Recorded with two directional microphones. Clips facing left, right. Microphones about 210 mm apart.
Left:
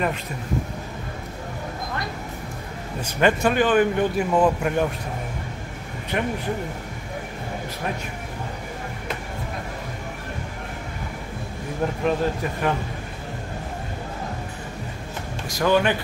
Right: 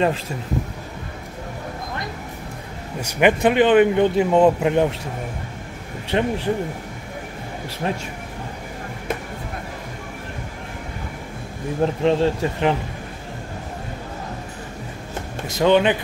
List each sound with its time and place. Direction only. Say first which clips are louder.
3.1 s speech: right 3 dB; 15° right (ahead or behind)
6.0 s speech: right 4 dB; 30° right (ahead or behind)
11.8 s speech: right 5 dB; 25° right (ahead or behind)
15.4 s speech: right 4 dB; 20° right (ahead or behind)